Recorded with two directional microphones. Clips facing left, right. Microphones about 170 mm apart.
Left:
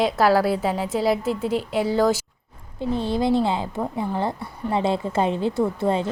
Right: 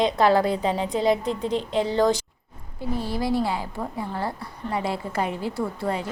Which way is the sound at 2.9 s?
25° left (ahead or behind).